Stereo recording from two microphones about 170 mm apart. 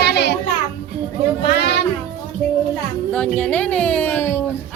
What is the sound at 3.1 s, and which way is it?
Speech, 10° left (ahead or behind).